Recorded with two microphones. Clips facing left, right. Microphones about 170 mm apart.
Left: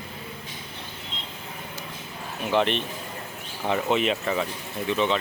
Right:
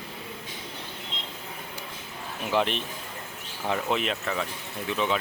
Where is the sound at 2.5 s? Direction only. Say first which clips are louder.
Left 3 dB; 5° right (ahead or behind).